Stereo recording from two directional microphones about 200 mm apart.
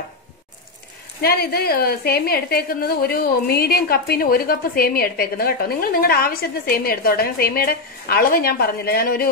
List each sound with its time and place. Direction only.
1.2 s a woman's voice: 50° left (ahead or behind)